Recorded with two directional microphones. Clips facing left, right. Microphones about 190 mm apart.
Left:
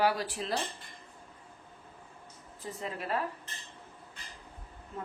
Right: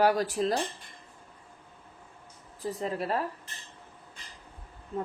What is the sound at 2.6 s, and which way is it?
Speech, 35° right (ahead or behind).